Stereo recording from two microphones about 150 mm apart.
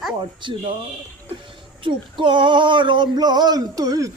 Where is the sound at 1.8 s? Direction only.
35° right (ahead or behind).